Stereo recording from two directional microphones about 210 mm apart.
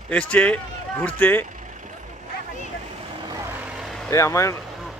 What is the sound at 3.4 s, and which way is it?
Vehicle, 10° right (ahead or behind).